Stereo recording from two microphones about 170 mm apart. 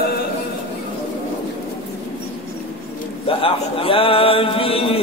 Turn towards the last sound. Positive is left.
turn(degrees=30)  # may be behind; listen again after turning